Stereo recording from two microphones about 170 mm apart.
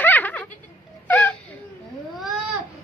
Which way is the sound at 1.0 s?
10° left (ahead or behind).